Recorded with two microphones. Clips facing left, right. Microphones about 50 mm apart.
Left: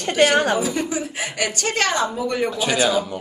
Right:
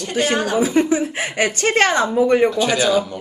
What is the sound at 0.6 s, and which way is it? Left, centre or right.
Speech, right.